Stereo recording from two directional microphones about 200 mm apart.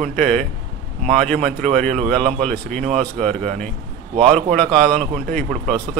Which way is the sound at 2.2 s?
30° right (ahead or behind).